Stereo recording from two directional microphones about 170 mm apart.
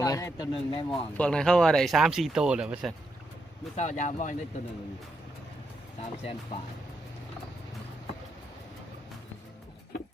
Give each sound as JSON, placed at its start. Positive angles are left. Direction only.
{"t": 0.0, "sound": "speech", "side_deg": 20}
{"t": 0.5, "sound": "speech", "side_deg": 30}
{"t": 1.1, "sound": "speech", "side_deg": 5}
{"t": 3.8, "sound": "speech", "side_deg": 45}
{"t": 6.0, "sound": "speech", "side_deg": 35}